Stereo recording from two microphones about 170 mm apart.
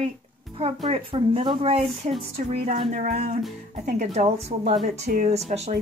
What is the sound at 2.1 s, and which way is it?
Music, 45° right (ahead or behind).